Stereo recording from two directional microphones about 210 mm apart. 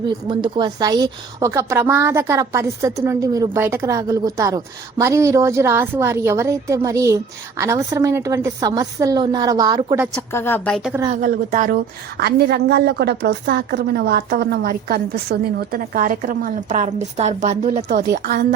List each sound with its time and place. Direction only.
0.3 s a woman's voice: 20° right (ahead or behind)
10.2 s a woman's voice: 10° left (ahead or behind)
11.1 s a woman's voice: 40° right (ahead or behind)
17.8 s a woman's voice: 50° right (ahead or behind)